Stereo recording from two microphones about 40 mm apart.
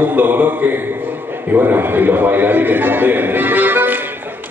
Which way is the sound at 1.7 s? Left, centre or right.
Right.